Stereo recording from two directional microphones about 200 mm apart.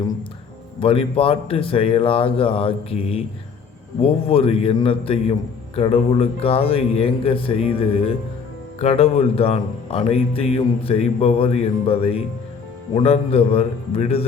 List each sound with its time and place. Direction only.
0.8 s speech: 25° left (ahead or behind)